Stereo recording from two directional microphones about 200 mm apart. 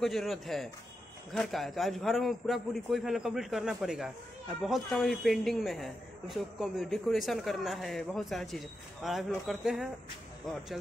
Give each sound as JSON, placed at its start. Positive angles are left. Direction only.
{"t": 0.0, "sound": "a man's voice", "side_deg": 0}